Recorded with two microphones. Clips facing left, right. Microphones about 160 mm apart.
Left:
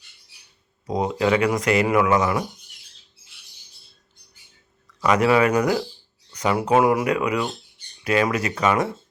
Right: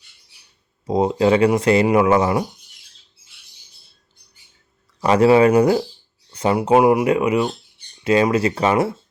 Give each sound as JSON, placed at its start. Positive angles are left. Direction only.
{"t": 0.9, "sound": "speech", "side_deg": -25}
{"t": 4.9, "sound": "speech", "side_deg": -30}